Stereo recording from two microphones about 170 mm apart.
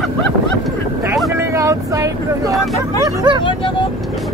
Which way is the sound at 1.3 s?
15° right (ahead or behind).